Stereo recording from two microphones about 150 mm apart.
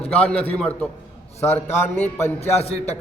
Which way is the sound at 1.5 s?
45° left (ahead or behind).